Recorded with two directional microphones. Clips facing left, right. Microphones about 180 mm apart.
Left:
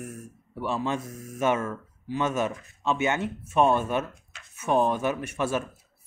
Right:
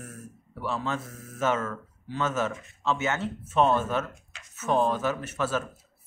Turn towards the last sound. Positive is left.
turn(degrees=15)  # may be behind; listen again after turning